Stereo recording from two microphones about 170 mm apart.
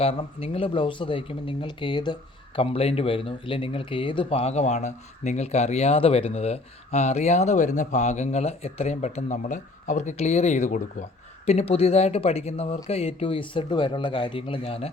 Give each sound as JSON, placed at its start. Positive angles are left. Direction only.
{"t": 0.0, "sound": "speech", "side_deg": 35}